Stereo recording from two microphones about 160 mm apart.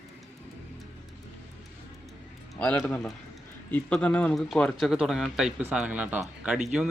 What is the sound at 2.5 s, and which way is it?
A man's voice, 10° left (ahead or behind).